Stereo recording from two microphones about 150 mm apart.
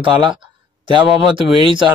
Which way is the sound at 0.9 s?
35° right (ahead or behind).